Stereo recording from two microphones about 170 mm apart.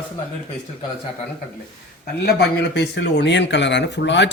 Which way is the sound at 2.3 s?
85° left.